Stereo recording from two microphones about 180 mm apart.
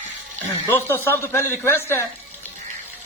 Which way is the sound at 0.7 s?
10° left (ahead or behind).